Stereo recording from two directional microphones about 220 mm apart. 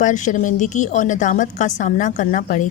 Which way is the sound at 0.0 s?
35° left (ahead or behind).